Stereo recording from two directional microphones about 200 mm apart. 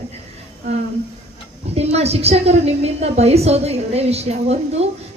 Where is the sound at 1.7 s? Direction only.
30° right (ahead or behind).